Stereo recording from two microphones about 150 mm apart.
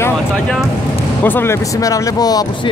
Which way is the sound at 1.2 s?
15° left (ahead or behind).